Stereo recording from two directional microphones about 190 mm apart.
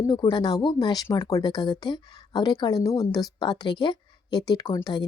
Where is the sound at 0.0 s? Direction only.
20° left (ahead or behind).